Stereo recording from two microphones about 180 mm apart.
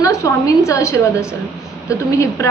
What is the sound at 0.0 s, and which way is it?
A woman's voice, 15° left (ahead or behind).